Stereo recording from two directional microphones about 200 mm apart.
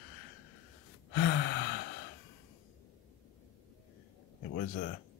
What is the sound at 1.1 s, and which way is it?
Gasp, 55° left (ahead or behind).